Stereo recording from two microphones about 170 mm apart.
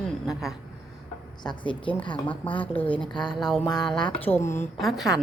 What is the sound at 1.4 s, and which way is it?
Speech, 25° left (ahead or behind).